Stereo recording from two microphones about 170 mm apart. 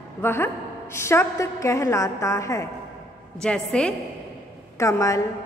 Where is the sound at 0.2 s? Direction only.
15° left (ahead or behind).